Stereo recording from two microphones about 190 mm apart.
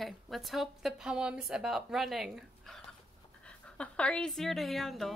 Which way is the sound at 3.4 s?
5° left (ahead or behind).